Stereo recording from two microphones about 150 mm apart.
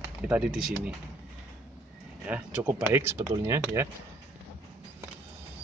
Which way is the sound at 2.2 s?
5° right (ahead or behind).